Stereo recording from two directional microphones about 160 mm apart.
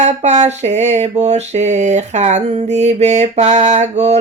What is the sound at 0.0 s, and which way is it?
Mantra, 45° right (ahead or behind).